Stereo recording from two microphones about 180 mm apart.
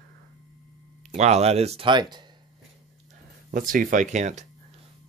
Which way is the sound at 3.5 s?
50° right (ahead or behind).